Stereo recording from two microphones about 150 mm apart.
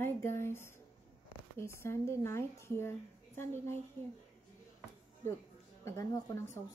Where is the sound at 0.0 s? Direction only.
15° left (ahead or behind).